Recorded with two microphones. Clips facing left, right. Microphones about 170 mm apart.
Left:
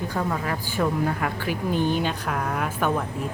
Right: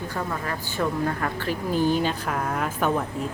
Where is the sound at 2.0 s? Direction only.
Centre (ahead or behind).